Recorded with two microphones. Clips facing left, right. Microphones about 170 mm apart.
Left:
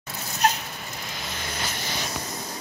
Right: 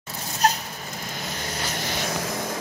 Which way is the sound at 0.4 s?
35° right (ahead or behind).